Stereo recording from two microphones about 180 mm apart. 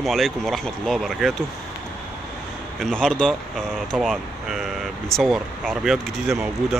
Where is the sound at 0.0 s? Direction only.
Centre (ahead or behind).